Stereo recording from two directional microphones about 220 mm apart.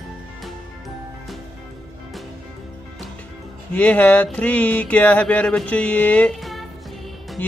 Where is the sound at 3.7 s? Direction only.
5° left (ahead or behind).